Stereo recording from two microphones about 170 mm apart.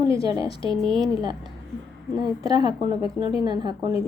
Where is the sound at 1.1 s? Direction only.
25° right (ahead or behind).